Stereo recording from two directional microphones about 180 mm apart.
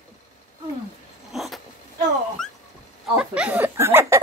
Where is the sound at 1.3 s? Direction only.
Centre (ahead or behind).